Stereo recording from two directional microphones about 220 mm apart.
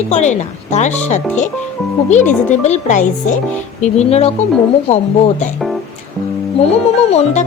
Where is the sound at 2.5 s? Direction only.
30° left (ahead or behind).